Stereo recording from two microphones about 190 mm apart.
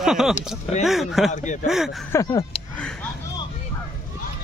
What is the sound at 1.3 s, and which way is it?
Speech, 40° left (ahead or behind).